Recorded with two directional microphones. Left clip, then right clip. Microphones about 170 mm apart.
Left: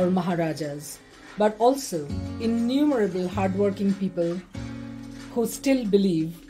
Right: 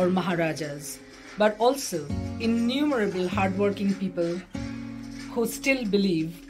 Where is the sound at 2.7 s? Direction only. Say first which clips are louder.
Left 4 dB; 40° left (ahead or behind).